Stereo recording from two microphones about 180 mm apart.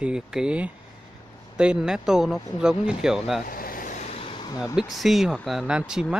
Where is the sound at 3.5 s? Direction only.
50° left (ahead or behind); by 4.6 s 25° left (ahead or behind).